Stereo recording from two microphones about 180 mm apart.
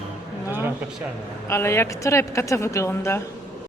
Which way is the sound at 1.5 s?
15° left (ahead or behind).